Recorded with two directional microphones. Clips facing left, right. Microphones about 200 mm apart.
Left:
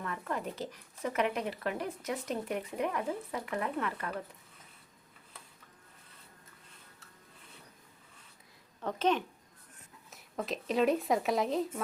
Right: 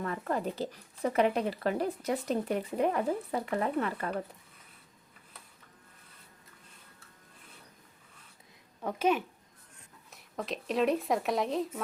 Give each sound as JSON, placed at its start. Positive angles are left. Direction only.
{"t": 0.0, "sound": "speech", "side_deg": -35}
{"t": 8.8, "sound": "speech", "side_deg": -10}